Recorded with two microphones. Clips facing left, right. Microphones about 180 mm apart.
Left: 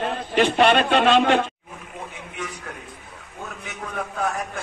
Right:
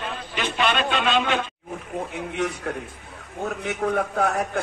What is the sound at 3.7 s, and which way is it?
Speech, 60° right (ahead or behind).